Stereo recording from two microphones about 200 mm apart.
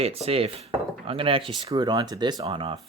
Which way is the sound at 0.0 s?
30° right (ahead or behind).